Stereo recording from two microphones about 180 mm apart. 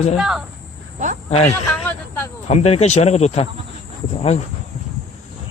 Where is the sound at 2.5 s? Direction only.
35° left (ahead or behind).